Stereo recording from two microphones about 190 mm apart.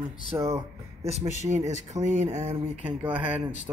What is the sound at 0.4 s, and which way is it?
Speech, 15° right (ahead or behind).